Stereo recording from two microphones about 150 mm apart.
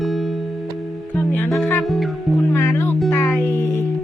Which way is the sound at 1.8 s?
Centre (ahead or behind).